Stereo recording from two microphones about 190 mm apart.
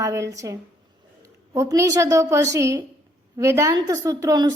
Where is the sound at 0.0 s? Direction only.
15° right (ahead or behind).